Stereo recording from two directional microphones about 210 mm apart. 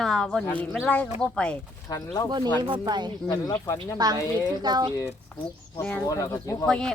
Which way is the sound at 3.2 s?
20° left (ahead or behind).